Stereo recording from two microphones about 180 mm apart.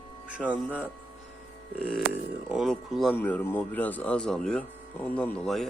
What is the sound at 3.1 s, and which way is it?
Speech, 10° left (ahead or behind).